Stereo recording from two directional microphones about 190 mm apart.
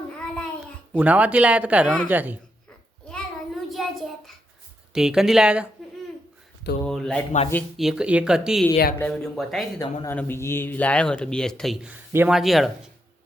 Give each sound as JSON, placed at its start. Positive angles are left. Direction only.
{"t": 0.3, "sound": "a child's voice", "side_deg": -5}
{"t": 3.1, "sound": "child singing", "side_deg": 0}
{"t": 4.9, "sound": "speech", "side_deg": 0}
{"t": 6.8, "sound": "speech", "side_deg": 5}
{"t": 8.7, "sound": "a man's voice", "side_deg": 45}
{"t": 9.0, "sound": "speech", "side_deg": 5}
{"t": 9.7, "sound": "speech", "side_deg": 20}